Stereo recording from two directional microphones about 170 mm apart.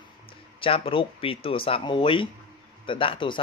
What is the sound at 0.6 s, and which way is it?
Speech, 30° left (ahead or behind).